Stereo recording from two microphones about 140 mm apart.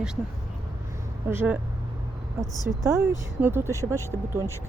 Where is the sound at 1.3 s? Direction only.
15° right (ahead or behind).